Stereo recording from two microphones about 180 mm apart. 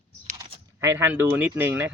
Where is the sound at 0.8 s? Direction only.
15° right (ahead or behind).